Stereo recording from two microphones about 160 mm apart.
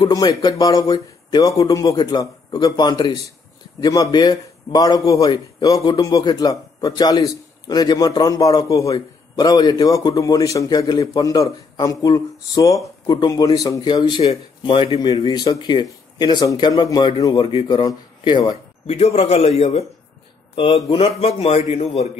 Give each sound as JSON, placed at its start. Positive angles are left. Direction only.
{"t": 0.0, "sound": "a man's voice", "side_deg": 25}